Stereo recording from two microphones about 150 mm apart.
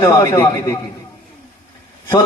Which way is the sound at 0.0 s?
20° left (ahead or behind).